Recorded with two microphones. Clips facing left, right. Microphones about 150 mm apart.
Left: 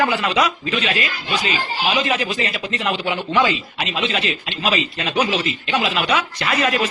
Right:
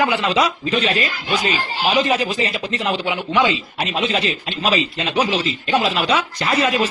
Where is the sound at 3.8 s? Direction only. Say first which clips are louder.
Right 3 dB; 35° right (ahead or behind).